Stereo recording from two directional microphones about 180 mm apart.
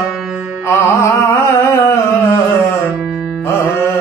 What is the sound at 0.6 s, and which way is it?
Carnatic music, 15° left (ahead or behind).